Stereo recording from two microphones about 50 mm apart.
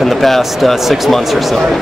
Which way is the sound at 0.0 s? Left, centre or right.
Centre.